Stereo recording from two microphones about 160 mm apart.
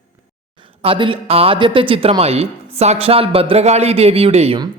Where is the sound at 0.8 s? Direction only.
35° right (ahead or behind).